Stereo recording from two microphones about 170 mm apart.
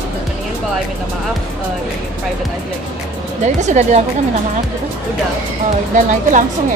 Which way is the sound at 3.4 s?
45° right (ahead or behind).